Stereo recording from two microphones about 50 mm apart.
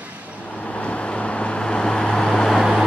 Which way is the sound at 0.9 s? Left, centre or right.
Left.